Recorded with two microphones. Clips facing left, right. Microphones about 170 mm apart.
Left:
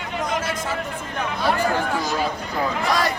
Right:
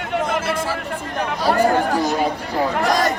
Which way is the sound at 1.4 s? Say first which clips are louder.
Right 5 dB; 40° right (ahead or behind).